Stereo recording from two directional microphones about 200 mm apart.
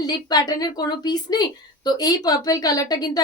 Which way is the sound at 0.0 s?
20° left (ahead or behind).